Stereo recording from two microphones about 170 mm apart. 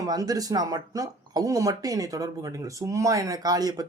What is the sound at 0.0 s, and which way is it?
Speech, 20° right (ahead or behind).